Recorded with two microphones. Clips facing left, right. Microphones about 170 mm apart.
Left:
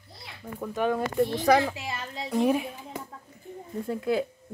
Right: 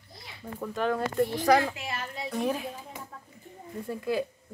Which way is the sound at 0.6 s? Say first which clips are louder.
Left 2 dB; 10° left (ahead or behind).